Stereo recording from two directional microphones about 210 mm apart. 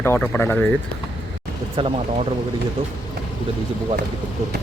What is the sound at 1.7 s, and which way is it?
Speech, 25° right (ahead or behind).